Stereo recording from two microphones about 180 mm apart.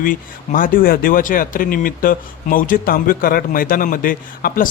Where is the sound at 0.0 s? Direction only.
50° left (ahead or behind).